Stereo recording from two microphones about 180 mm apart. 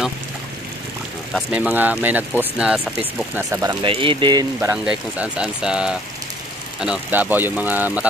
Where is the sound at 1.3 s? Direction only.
10° right (ahead or behind).